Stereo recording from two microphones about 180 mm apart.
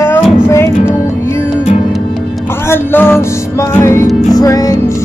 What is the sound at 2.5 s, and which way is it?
Music, 15° left (ahead or behind).